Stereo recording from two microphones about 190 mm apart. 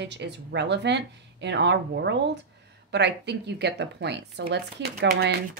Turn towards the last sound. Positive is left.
turn(degrees=-60)  # may be behind; listen again after turning